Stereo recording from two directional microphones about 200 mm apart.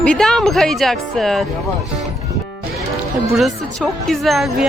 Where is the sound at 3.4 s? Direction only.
Centre (ahead or behind).